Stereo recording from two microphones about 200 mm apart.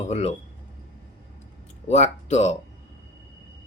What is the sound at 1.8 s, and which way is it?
Speech, 35° left (ahead or behind).